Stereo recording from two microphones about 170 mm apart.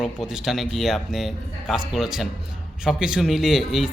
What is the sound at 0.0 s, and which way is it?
A man's voice, 5° right (ahead or behind).